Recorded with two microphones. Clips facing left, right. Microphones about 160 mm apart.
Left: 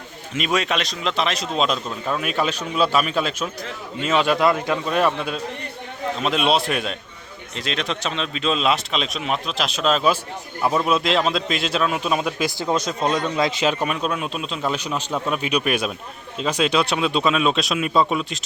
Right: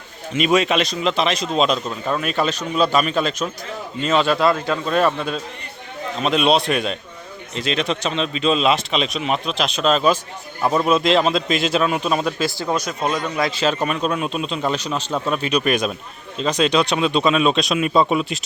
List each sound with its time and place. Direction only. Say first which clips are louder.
0.3 s a man's voice: right 5 dB; centre (ahead or behind)
12.4 s a man's voice: even; 20° left (ahead or behind)
13.1 s a man's voice: left 1 dB; 10° right (ahead or behind)
13.3 s a man's voice: even; 20° left (ahead or behind)
13.8 s a man's voice: right 2 dB; 5° left (ahead or behind)